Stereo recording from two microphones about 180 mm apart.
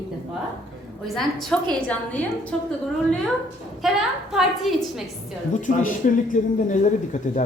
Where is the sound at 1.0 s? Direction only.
Centre (ahead or behind).